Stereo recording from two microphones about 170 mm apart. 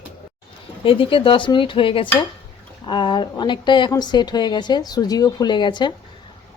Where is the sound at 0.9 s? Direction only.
30° left (ahead or behind).